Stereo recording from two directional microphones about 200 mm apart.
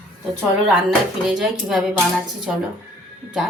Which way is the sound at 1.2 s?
Centre (ahead or behind).